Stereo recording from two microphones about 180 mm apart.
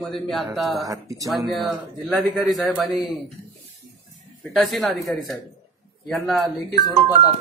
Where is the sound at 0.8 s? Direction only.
20° right (ahead or behind).